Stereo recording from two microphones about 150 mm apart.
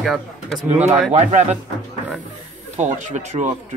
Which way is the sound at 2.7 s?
50° right (ahead or behind).